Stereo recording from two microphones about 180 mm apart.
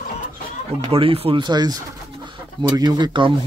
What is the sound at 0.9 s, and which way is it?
Speech, 30° right (ahead or behind).